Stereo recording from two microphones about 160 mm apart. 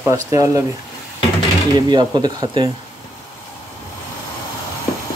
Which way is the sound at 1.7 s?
25° right (ahead or behind).